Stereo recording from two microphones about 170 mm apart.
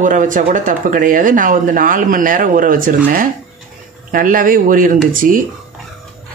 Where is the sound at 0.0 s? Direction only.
50° right (ahead or behind).